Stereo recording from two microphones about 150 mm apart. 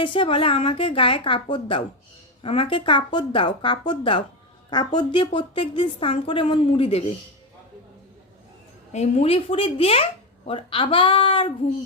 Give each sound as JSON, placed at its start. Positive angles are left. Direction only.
{"t": 0.0, "sound": "speech", "side_deg": 35}
{"t": 8.9, "sound": "speech", "side_deg": 50}